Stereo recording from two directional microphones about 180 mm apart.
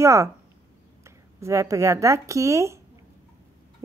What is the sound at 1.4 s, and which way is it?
Speech, 15° right (ahead or behind).